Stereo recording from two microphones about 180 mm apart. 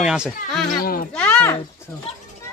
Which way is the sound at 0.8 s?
55° left (ahead or behind).